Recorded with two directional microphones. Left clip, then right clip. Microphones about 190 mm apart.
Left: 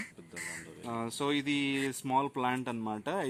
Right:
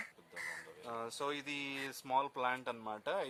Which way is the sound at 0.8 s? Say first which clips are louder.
Left 6 dB; 30° left (ahead or behind).